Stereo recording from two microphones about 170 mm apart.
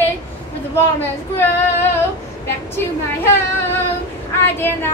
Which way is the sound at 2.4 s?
15° left (ahead or behind).